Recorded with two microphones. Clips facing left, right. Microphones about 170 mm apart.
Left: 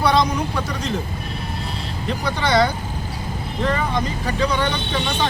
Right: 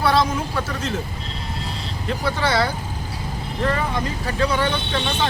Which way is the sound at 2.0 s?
5° right (ahead or behind).